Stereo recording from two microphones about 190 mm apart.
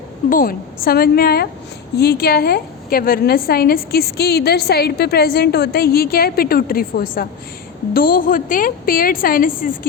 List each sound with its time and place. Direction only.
0.3 s a woman's voice: 50° left (ahead or behind)